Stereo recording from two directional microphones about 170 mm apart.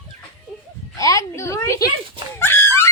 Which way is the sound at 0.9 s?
20° left (ahead or behind).